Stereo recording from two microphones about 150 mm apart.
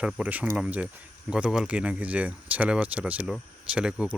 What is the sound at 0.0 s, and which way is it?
Speech, 10° right (ahead or behind).